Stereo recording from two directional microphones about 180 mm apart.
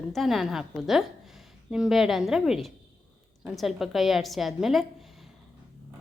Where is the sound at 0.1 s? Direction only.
Centre (ahead or behind).